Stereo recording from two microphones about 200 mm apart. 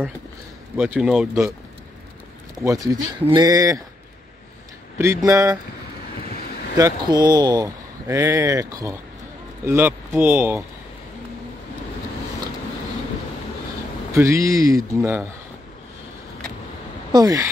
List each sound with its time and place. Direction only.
0.7 s speech: 10° right (ahead or behind)
2.6 s speech: 15° right (ahead or behind)
4.9 s speech: 15° right (ahead or behind)
6.8 s speech: 20° right (ahead or behind)
14.1 s speech: 15° right (ahead or behind)
17.1 s speech: 15° right (ahead or behind)